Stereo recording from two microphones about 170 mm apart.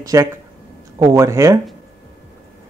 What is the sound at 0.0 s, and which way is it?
A man's voice, 20° right (ahead or behind).